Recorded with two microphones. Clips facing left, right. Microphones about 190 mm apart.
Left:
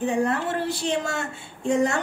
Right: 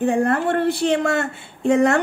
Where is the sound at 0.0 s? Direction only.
55° right (ahead or behind).